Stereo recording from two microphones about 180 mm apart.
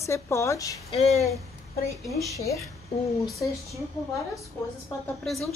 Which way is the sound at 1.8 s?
20° left (ahead or behind).